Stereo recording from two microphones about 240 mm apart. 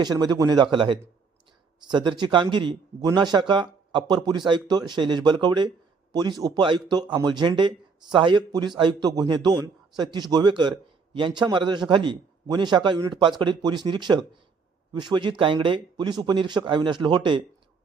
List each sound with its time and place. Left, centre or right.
0.0 s a man's voice: centre